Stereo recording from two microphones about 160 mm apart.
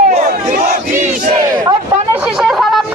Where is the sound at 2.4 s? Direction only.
Centre (ahead or behind).